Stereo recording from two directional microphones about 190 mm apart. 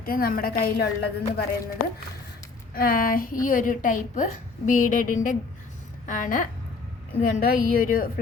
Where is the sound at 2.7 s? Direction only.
50° left (ahead or behind).